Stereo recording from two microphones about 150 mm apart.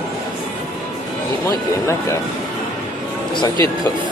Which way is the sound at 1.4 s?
15° left (ahead or behind).